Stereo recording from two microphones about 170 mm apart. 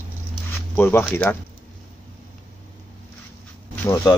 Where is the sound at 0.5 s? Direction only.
15° left (ahead or behind).